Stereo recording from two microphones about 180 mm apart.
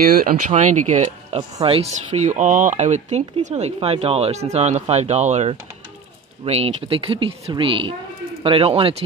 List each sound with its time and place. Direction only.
0.1 s speech: 55° right (ahead or behind)
0.5 s speech: 40° right (ahead or behind)